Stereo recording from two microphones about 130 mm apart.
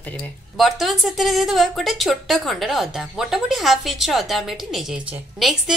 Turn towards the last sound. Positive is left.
turn(degrees=0)  # may be behind; listen again after turning